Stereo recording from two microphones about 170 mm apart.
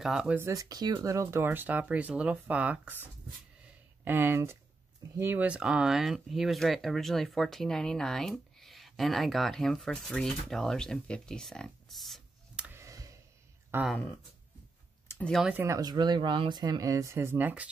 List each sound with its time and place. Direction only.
0.0 s speech: 5° right (ahead or behind)
0.5 s speech: 20° right (ahead or behind); by 12.6 s centre (ahead or behind)
12.6 s a sound: 15° right (ahead or behind)
13.7 s speech: 15° right (ahead or behind)
15.0 s a sound: 5° left (ahead or behind)
15.4 s speech: 15° right (ahead or behind)